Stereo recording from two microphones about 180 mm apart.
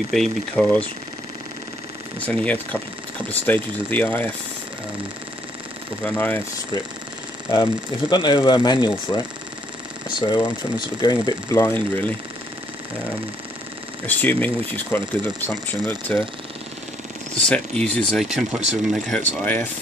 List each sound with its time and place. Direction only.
0.1 s speech: 5° left (ahead or behind)
2.1 s speech: 10° left (ahead or behind)
6.0 s speech: 10° left (ahead or behind)
7.5 s speech: 25° left (ahead or behind)
10.2 s speech: 25° left (ahead or behind)
14.0 s speech: 10° left (ahead or behind)
16.1 s speech: 5° left (ahead or behind)
17.4 s speech: 5° left (ahead or behind)